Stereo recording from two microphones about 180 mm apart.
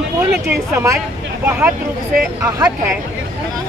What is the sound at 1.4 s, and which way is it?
Speech, 5° right (ahead or behind).